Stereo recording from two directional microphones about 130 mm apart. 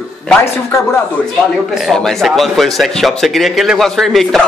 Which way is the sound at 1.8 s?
Centre (ahead or behind).